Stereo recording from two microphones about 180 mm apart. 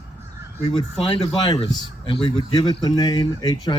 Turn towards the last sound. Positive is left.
turn(degrees=25)  # may be behind; listen again after turning